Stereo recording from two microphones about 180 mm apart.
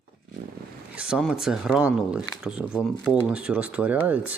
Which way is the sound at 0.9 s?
5° right (ahead or behind).